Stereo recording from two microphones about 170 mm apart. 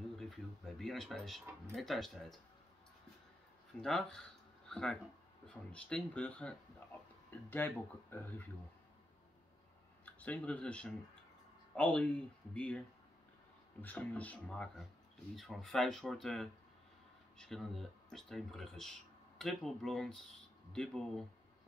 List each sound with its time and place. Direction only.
0.2 s a sound: centre (ahead or behind)
1.8 s speech: centre (ahead or behind)
3.8 s speech: 5° left (ahead or behind)
10.0 s speech: 10° left (ahead or behind)